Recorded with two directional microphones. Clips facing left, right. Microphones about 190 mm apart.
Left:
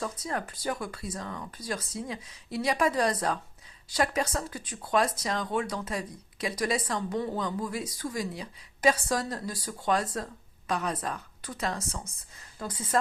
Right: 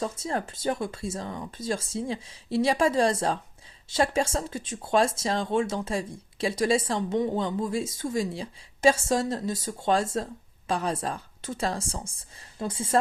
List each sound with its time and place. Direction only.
0.0 s speech: 25° right (ahead or behind)